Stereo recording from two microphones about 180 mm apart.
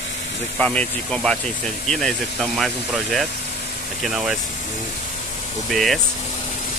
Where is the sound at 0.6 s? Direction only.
5° left (ahead or behind).